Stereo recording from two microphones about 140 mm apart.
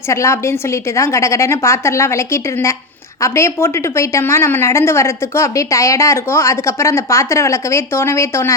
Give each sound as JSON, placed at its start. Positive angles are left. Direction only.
{"t": 0.1, "sound": "a woman's voice", "side_deg": 20}